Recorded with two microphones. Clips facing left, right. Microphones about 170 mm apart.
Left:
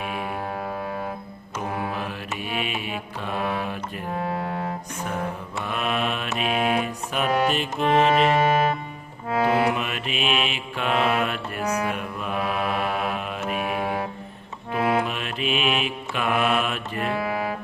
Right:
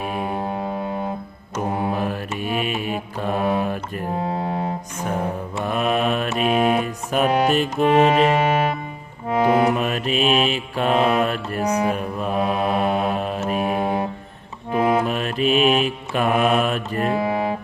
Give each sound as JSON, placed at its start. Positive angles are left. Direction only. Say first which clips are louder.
{"t": 0.0, "sound": "music", "louder": "right 4 dB", "side_deg": -35}
{"t": 1.7, "sound": "mantra", "louder": "right 5 dB", "side_deg": -25}
{"t": 2.0, "sound": "mantra", "louder": "right 6 dB", "side_deg": -45}
{"t": 4.1, "sound": "a sound", "louder": "right 3 dB", "side_deg": -25}
{"t": 5.6, "sound": "mantra", "louder": "right 6 dB", "side_deg": -40}
{"t": 7.4, "sound": "music", "louder": "right 5 dB", "side_deg": -45}
{"t": 7.9, "sound": "music", "louder": "right 3 dB", "side_deg": -10}
{"t": 9.6, "sound": "mantra", "louder": "right 5 dB", "side_deg": -40}
{"t": 13.4, "sound": "music", "louder": "right 3 dB", "side_deg": -35}
{"t": 14.7, "sound": "mantra", "louder": "right 4 dB", "side_deg": -40}
{"t": 17.1, "sound": "music", "louder": "right 4 dB", "side_deg": -25}